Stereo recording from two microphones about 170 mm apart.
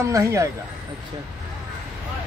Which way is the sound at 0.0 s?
15° right (ahead or behind).